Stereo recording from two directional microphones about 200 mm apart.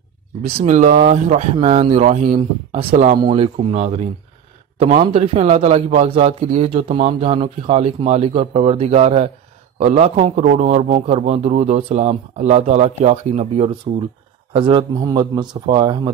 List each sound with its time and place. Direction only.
0.5 s a man's voice: 35° right (ahead or behind)